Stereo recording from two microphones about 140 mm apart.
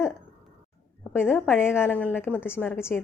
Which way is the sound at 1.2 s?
15° left (ahead or behind).